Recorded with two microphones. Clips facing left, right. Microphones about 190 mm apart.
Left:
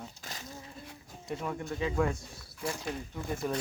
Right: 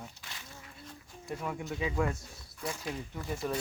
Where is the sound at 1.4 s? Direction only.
5° right (ahead or behind).